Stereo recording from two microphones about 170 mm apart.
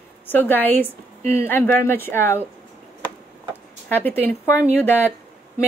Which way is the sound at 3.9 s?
10° left (ahead or behind).